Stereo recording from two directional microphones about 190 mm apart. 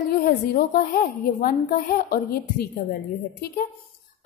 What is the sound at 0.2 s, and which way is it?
A woman's voice, 55° left (ahead or behind).